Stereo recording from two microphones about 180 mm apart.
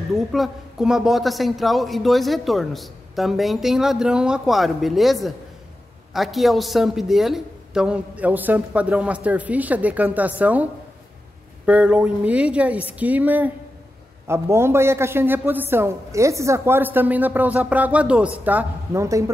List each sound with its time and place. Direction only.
0.1 s speech: centre (ahead or behind); by 19.3 s 15° right (ahead or behind)